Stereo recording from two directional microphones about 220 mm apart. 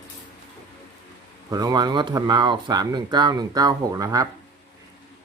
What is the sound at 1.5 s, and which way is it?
Speech, 15° right (ahead or behind).